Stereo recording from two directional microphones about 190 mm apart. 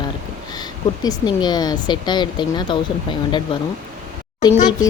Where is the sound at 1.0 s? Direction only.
20° left (ahead or behind).